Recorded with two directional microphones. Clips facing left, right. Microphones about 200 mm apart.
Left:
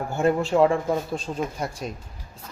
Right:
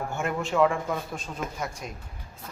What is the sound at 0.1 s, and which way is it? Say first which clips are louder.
Speech: left 10 dB; 35° left (ahead or behind).